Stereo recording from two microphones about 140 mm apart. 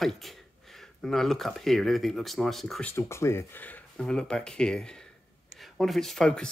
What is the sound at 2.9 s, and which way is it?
Speech, 20° left (ahead or behind).